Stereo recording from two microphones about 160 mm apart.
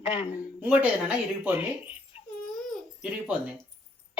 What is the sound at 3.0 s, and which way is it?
Speech, 5° right (ahead or behind).